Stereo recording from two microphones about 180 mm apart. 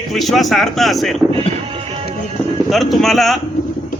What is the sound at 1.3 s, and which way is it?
Music, 30° right (ahead or behind).